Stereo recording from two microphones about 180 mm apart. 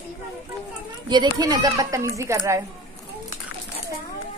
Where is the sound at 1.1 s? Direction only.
25° right (ahead or behind).